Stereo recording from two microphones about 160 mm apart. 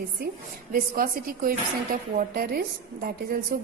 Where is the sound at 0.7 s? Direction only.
65° right (ahead or behind).